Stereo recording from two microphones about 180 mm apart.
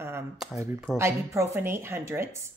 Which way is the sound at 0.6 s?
15° right (ahead or behind).